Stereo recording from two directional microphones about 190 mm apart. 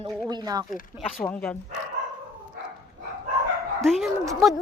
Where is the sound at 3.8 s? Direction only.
Centre (ahead or behind).